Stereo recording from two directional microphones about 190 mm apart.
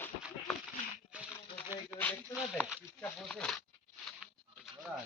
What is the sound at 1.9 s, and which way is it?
Speech, 10° left (ahead or behind).